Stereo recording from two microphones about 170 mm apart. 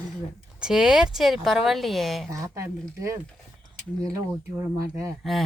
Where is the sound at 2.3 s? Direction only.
20° right (ahead or behind).